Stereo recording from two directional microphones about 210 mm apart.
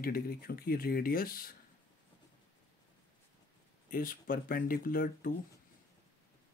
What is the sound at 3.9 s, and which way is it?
Speech, 45° left (ahead or behind).